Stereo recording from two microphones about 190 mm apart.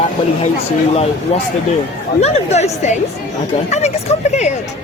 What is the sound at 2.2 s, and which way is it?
Speech, 35° left (ahead or behind).